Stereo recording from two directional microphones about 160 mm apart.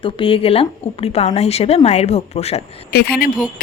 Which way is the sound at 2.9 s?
75° left (ahead or behind).